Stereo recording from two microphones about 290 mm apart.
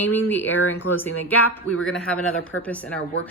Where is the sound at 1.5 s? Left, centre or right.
Left.